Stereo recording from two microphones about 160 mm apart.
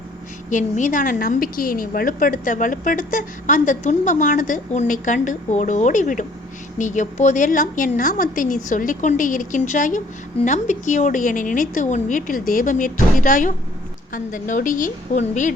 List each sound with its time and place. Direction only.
0.5 s a woman's voice: 55° left (ahead or behind)